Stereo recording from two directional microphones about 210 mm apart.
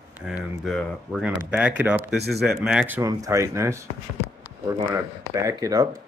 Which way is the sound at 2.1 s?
50° right (ahead or behind).